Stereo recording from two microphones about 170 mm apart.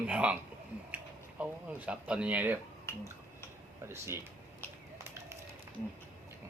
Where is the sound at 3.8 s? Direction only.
15° right (ahead or behind).